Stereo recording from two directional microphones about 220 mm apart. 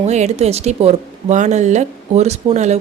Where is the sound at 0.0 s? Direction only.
30° right (ahead or behind).